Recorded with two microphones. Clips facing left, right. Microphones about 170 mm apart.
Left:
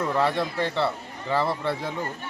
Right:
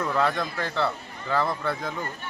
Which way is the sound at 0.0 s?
10° left (ahead or behind).